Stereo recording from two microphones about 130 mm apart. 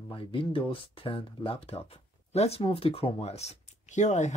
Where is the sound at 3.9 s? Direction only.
65° left (ahead or behind).